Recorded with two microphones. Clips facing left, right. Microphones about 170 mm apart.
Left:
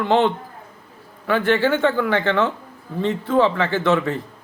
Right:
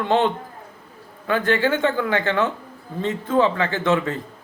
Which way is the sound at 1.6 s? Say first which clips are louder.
Left 2 dB; 15° right (ahead or behind).